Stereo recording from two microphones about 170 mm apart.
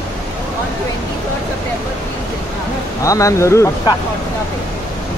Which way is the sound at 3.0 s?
20° left (ahead or behind).